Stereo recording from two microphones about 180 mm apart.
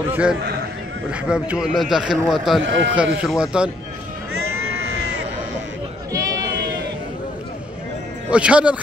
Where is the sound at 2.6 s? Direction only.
90° right.